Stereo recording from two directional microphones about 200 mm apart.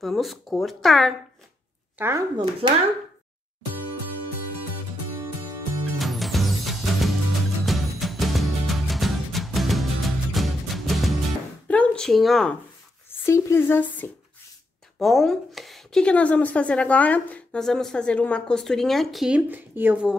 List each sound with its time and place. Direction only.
0.0 s a woman's voice: centre (ahead or behind)
2.0 s speech: 10° right (ahead or behind)
2.6 s speech: 30° right (ahead or behind)
5.9 s music: centre (ahead or behind)
11.6 s a sound: 5° left (ahead or behind)
13.2 s a woman's voice: 15° left (ahead or behind); by 20.2 s 5° right (ahead or behind)